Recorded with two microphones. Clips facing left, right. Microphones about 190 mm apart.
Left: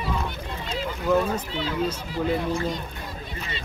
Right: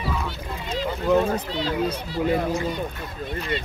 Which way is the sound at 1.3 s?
35° right (ahead or behind).